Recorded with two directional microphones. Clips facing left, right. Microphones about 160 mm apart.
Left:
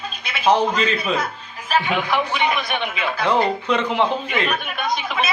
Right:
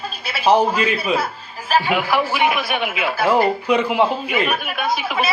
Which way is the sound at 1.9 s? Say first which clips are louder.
Right 2 dB; 5° right (ahead or behind).